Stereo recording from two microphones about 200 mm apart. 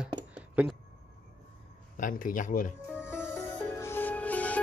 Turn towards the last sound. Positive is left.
turn(degrees=5)  # may be behind; listen again after turning